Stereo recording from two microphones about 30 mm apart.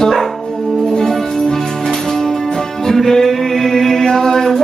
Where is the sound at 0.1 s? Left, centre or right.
Centre.